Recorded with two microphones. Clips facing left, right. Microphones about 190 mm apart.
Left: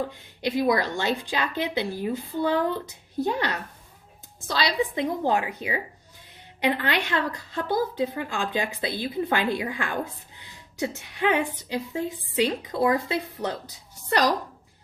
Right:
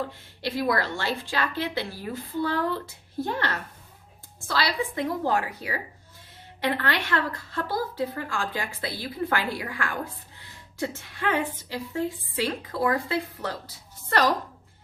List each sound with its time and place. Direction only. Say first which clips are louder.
0.4 s a woman's voice: left 3 dB; 20° left (ahead or behind)